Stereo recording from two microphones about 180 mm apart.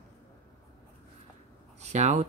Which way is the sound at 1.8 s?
40° right (ahead or behind).